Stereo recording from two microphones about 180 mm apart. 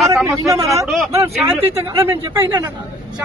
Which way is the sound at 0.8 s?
Centre (ahead or behind).